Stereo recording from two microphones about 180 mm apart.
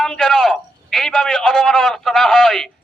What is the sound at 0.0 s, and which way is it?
A man's voice, 5° left (ahead or behind).